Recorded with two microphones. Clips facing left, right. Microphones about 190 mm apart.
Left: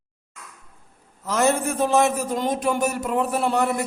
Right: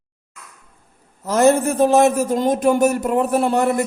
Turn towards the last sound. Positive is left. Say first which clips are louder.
# right 5 dB
turn(degrees=-45)  # may be behind; listen again after turning